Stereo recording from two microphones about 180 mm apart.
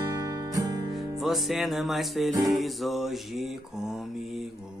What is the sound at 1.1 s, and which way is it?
Mantra, centre (ahead or behind).